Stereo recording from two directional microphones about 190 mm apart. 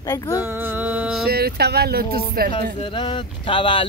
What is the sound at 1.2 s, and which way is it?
Speech, 55° right (ahead or behind).